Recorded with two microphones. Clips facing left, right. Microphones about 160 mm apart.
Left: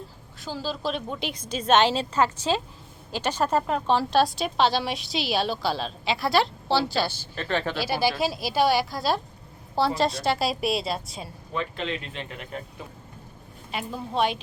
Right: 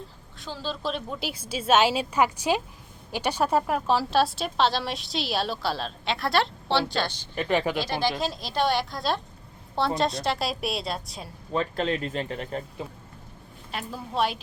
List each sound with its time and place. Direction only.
0.3 s a woman's voice: centre (ahead or behind)
7.3 s a woman's voice: 15° right (ahead or behind)
7.8 s a woman's voice: 10° left (ahead or behind)
11.5 s speech: 40° right (ahead or behind)
13.7 s a woman's voice: centre (ahead or behind)